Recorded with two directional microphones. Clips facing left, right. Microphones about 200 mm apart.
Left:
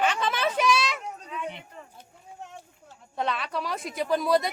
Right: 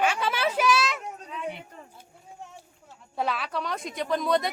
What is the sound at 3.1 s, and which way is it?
Speech, 5° right (ahead or behind).